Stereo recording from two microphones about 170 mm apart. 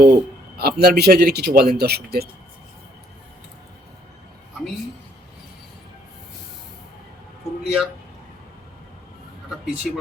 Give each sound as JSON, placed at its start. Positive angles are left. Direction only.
{"t": 0.0, "sound": "a sound", "side_deg": -70}
{"t": 0.8, "sound": "speech", "side_deg": -65}
{"t": 7.6, "sound": "a man's voice", "side_deg": -5}